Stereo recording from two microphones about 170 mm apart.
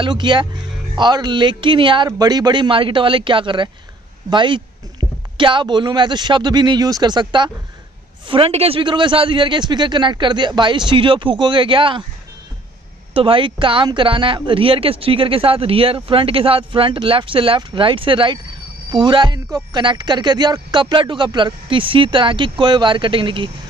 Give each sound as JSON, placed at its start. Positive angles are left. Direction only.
{"t": 0.0, "sound": "speech", "side_deg": -25}
{"t": 13.1, "sound": "speech", "side_deg": -30}